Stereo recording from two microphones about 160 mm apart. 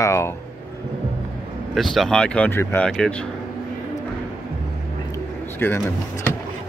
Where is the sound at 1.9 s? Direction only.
5° left (ahead or behind).